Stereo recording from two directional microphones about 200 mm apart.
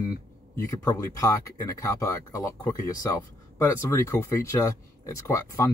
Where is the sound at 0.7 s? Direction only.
15° left (ahead or behind).